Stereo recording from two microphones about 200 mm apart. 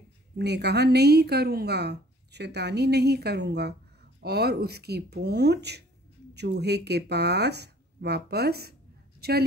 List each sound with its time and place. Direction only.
0.4 s a woman's voice: 55° right (ahead or behind)